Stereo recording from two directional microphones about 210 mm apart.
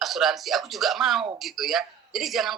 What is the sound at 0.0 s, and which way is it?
A woman's voice, centre (ahead or behind).